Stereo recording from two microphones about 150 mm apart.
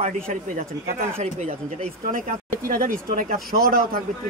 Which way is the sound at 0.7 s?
20° right (ahead or behind).